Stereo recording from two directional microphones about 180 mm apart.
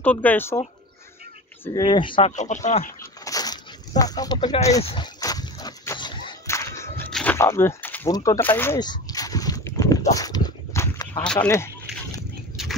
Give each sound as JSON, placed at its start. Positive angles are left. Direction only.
{"t": 0.0, "sound": "speech", "side_deg": 10}
{"t": 1.7, "sound": "speech", "side_deg": 25}
{"t": 2.3, "sound": "speech", "side_deg": 40}
{"t": 3.0, "sound": "a sound", "side_deg": 20}
{"t": 7.1, "sound": "wild animals", "side_deg": 5}
{"t": 7.3, "sound": "speech", "side_deg": 15}
{"t": 8.7, "sound": "a sound", "side_deg": 20}